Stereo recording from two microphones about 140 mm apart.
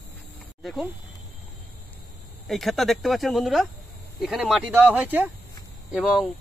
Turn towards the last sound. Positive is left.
turn(degrees=0)  # may be behind; listen again after turning